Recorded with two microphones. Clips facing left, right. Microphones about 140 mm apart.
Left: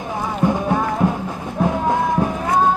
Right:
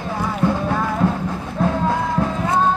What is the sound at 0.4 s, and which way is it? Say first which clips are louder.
Music: left 2 dB; 15° left (ahead or behind).